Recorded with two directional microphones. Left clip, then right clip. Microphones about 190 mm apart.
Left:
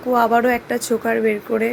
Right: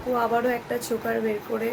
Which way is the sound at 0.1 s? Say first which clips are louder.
Left 8 dB; 55° left (ahead or behind).